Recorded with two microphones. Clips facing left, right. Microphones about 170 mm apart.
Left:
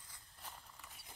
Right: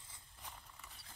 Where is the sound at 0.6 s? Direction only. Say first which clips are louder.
Even; 5° left (ahead or behind).